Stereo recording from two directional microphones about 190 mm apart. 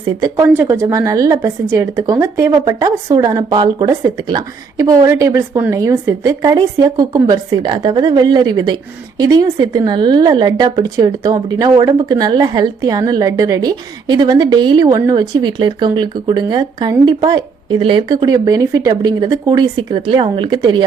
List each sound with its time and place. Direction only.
0.0 s a woman's voice: 15° right (ahead or behind)